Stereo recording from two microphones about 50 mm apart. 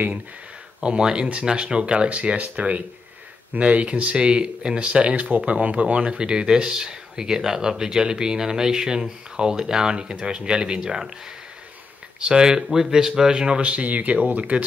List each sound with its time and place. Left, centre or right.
0.7 s speech: centre
12.2 s speech: centre
13.6 s speech: right